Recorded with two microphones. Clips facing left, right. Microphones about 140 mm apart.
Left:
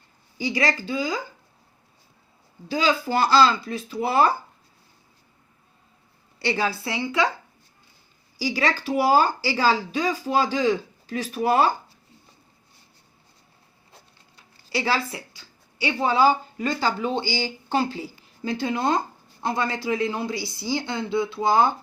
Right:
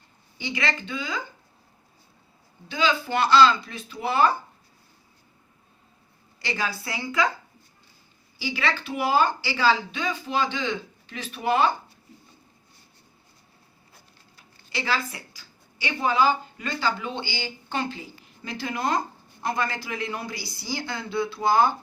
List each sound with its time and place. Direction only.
0.3 s speech: 35° left (ahead or behind)
2.6 s speech: 35° left (ahead or behind)
6.4 s speech: 35° left (ahead or behind)
8.4 s speech: 40° left (ahead or behind)
14.7 s a woman's voice: 30° left (ahead or behind)